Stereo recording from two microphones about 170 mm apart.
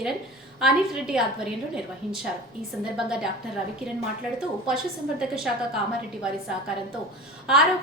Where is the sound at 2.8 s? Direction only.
5° right (ahead or behind).